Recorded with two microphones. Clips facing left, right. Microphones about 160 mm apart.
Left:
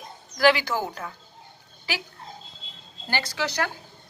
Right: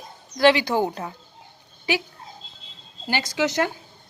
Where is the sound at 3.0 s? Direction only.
15° right (ahead or behind).